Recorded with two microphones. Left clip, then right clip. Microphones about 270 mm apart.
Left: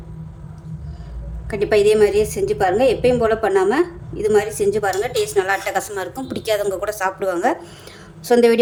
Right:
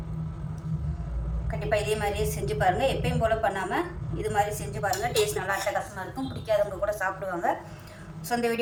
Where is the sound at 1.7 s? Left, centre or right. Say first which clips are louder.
Left 14 dB; left.